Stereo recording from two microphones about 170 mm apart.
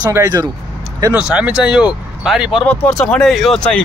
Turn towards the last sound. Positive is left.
turn(degrees=5)  # may be behind; listen again after turning